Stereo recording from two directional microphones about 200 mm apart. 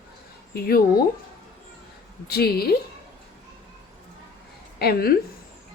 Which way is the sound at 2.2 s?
50° left (ahead or behind).